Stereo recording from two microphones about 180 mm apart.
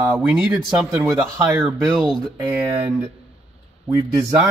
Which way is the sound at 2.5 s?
10° right (ahead or behind).